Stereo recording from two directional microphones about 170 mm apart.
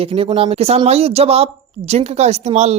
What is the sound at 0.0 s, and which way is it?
A woman's voice, 35° right (ahead or behind).